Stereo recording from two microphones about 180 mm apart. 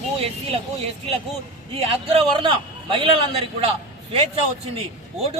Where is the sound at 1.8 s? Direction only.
35° right (ahead or behind).